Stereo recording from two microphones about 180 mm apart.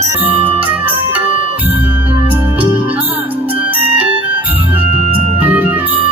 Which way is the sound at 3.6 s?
10° right (ahead or behind).